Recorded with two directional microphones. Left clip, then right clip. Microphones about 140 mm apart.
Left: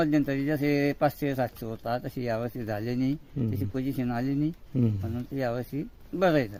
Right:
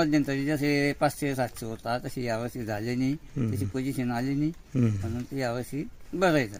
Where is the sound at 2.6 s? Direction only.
35° left (ahead or behind).